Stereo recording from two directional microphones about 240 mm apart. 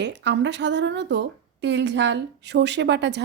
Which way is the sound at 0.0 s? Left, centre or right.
Right.